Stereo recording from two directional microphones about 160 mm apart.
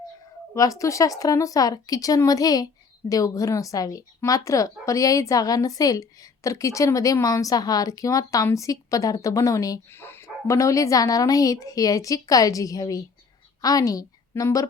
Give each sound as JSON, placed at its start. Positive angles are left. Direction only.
{"t": 0.5, "sound": "a woman's voice", "side_deg": 20}